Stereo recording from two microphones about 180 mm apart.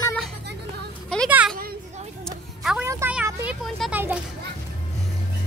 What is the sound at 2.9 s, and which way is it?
Speech, 10° right (ahead or behind).